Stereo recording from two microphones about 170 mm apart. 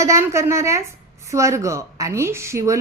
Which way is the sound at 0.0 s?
15° right (ahead or behind).